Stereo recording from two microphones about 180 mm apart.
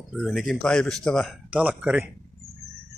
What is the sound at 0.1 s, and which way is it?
Speech, centre (ahead or behind).